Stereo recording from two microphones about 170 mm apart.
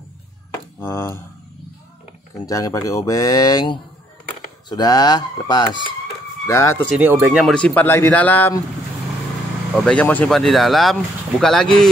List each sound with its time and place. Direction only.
0.7 s speech: 15° left (ahead or behind)
2.4 s a man's voice: 20° left (ahead or behind)
7.0 s speech: 10° right (ahead or behind)
7.4 s a man's voice: 5° left (ahead or behind)
9.8 s speech: 5° left (ahead or behind)